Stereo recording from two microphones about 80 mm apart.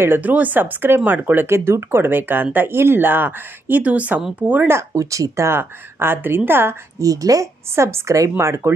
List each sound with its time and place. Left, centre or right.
0.0 s speech: right
4.6 s speech: right
7.0 s speech: right